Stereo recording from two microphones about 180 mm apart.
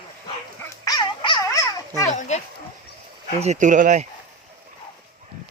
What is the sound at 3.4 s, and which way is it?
Speech, 40° right (ahead or behind).